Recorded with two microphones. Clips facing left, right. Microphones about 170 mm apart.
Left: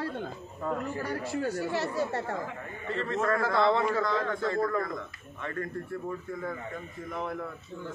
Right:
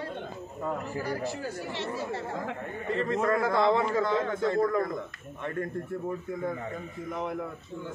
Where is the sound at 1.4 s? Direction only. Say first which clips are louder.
Left 4 dB; 70° left (ahead or behind).